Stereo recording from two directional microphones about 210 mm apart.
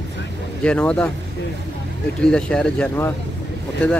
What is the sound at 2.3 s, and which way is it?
Speech, 5° left (ahead or behind).